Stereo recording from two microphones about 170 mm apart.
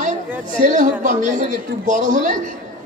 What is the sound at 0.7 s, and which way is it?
Speech, 50° right (ahead or behind).